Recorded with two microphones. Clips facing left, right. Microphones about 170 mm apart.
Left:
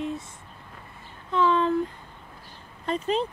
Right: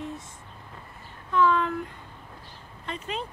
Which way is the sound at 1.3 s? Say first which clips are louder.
Left 1 dB; 25° left (ahead or behind).